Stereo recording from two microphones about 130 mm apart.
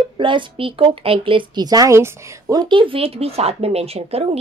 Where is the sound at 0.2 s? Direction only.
40° right (ahead or behind).